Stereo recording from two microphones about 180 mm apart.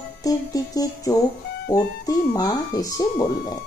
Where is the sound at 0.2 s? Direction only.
20° left (ahead or behind).